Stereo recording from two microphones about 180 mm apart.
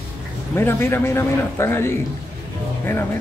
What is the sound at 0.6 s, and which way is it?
Speech, 15° left (ahead or behind).